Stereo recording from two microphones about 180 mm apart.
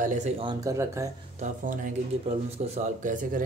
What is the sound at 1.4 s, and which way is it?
Speech, 45° right (ahead or behind).